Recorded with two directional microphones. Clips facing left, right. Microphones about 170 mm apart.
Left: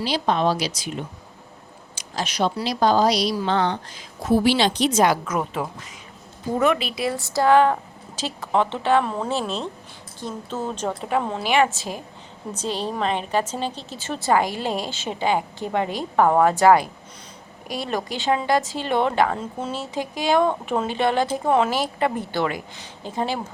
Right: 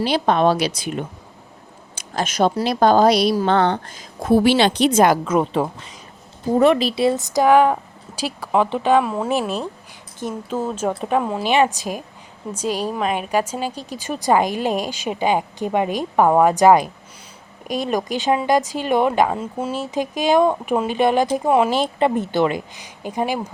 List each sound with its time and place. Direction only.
0.0 s speech: 55° right (ahead or behind)
5.2 s a woman's voice: 25° right (ahead or behind); by 11.4 s 5° right (ahead or behind)
11.4 s a woman's voice: 20° right (ahead or behind)
21.7 s speech: 25° right (ahead or behind)